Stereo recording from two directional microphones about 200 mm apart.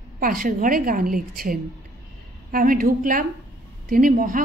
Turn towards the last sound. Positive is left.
turn(degrees=-45)  # may be behind; listen again after turning